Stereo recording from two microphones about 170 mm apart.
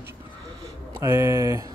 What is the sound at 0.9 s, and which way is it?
Speech, 15° right (ahead or behind).